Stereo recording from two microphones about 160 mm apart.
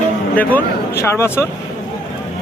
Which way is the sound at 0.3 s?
15° left (ahead or behind).